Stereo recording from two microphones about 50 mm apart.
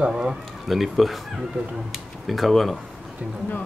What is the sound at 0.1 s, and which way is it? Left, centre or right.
Speech, centre.